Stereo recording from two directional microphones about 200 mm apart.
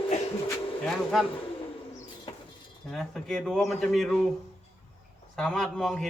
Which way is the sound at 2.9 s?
Centre (ahead or behind).